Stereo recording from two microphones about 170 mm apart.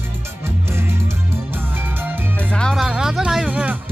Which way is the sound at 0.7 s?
15° right (ahead or behind).